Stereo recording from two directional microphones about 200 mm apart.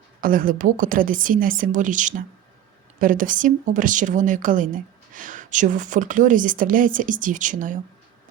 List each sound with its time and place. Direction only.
0.2 s a woman's voice: 45° right (ahead or behind)